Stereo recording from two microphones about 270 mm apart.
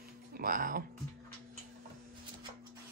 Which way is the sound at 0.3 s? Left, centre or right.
Right.